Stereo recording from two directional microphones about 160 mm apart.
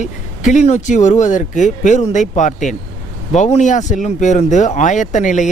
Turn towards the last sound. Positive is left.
turn(degrees=50)  # may be behind; listen again after turning